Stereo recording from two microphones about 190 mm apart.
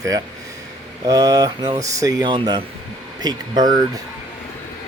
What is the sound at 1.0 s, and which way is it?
Speech, 20° right (ahead or behind).